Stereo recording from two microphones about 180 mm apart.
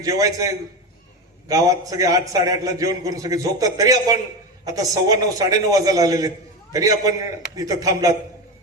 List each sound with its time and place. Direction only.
0.0 s a man's voice: 20° right (ahead or behind)